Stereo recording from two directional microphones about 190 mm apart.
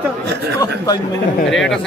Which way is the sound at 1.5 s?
Centre (ahead or behind).